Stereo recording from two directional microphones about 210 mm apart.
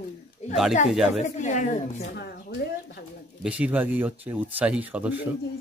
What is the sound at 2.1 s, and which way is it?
Speech, 50° left (ahead or behind).